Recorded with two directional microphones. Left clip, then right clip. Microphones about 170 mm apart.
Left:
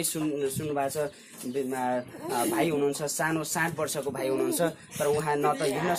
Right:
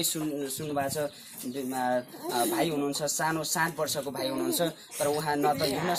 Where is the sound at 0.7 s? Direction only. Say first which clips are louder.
Right 2 dB; 25° left (ahead or behind).